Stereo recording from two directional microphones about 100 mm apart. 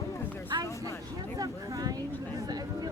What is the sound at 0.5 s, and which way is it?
Vehicle, 40° right (ahead or behind).